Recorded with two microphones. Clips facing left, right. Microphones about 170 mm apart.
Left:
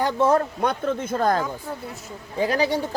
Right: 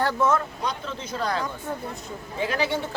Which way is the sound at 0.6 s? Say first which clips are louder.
Left 7 dB; 55° left (ahead or behind).